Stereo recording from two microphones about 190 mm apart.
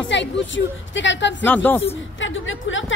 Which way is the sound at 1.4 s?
10° left (ahead or behind).